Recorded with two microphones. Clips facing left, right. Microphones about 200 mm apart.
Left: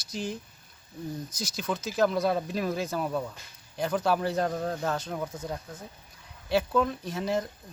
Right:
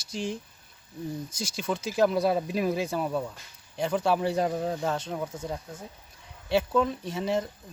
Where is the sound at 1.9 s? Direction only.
Centre (ahead or behind).